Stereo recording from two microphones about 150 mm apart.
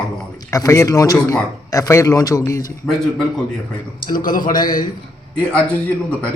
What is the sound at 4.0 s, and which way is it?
Speech, 70° left (ahead or behind).